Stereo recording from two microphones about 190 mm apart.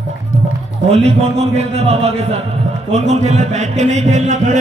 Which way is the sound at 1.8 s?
35° right (ahead or behind).